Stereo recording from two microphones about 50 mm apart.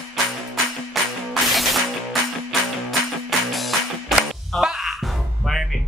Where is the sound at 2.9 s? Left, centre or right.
Centre.